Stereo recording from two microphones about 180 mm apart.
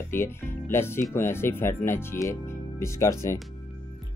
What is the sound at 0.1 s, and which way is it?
Speech, 15° left (ahead or behind).